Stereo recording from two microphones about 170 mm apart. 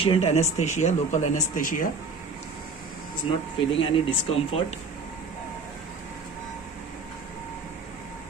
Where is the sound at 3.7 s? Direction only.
30° left (ahead or behind).